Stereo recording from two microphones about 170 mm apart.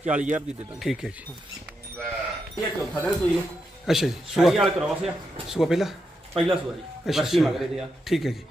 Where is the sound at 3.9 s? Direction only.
Centre (ahead or behind).